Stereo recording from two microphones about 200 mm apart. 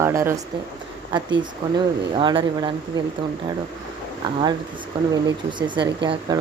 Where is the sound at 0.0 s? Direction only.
10° right (ahead or behind).